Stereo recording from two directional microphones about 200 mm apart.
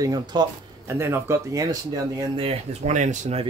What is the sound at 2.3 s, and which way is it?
Speech, 30° right (ahead or behind).